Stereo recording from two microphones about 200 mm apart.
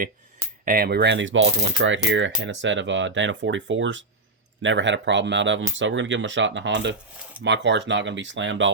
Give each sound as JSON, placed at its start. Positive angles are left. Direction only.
{"t": 0.6, "sound": "speech", "side_deg": -45}